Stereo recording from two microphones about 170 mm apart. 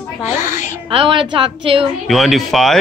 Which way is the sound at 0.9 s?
30° right (ahead or behind).